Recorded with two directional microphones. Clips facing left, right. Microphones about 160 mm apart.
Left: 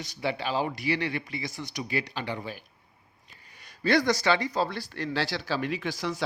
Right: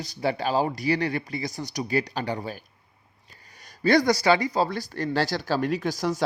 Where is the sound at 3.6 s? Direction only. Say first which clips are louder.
Right 4 dB; 40° right (ahead or behind).